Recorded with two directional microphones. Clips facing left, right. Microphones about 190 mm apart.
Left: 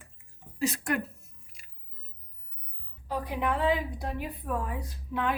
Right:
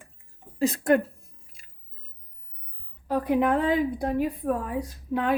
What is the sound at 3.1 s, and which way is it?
A woman's voice, 55° right (ahead or behind).